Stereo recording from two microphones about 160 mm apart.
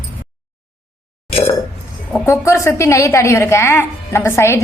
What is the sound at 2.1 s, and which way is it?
A woman's voice, 15° left (ahead or behind).